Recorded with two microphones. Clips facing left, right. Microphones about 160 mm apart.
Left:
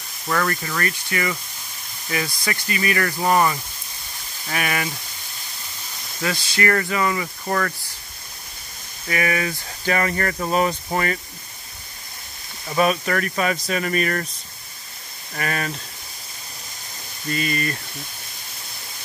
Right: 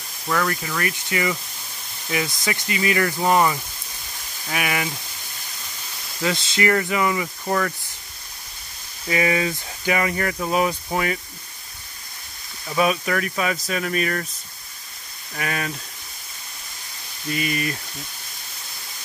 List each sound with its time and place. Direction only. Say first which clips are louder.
0.3 s speech: even; 5° right (ahead or behind)
6.2 s speech: right 1 dB; 20° right (ahead or behind)
9.0 s speech: right 2 dB; 20° right (ahead or behind)
9.8 s speech: even; 10° right (ahead or behind)
12.7 s speech: left 1 dB; centre (ahead or behind)
15.3 s speech: left 1 dB; 5° right (ahead or behind)
17.3 s speech: even; 10° right (ahead or behind)